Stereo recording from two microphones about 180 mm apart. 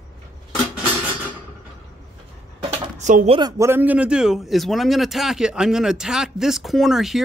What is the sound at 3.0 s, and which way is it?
Speech, 40° right (ahead or behind).